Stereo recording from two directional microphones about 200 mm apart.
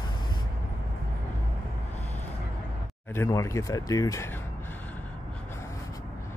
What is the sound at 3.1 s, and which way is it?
Speech, 15° left (ahead or behind).